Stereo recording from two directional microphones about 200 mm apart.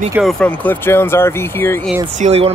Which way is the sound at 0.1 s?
Centre (ahead or behind).